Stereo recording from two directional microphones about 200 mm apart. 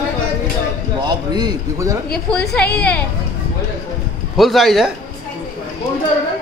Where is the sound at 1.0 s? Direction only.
20° right (ahead or behind).